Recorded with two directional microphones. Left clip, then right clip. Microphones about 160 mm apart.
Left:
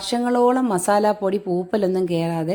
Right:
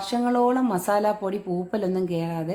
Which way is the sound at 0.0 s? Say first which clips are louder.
Left 4 dB; 40° left (ahead or behind).